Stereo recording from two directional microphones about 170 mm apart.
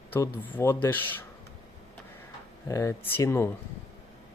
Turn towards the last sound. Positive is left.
turn(degrees=15)  # may be behind; listen again after turning